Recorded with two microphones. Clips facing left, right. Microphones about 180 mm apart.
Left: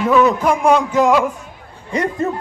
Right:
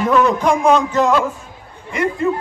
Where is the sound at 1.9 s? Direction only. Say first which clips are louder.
Right 1 dB; 40° left (ahead or behind).